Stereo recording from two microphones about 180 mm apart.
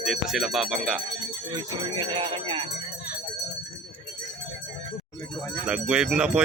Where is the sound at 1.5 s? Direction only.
25° right (ahead or behind).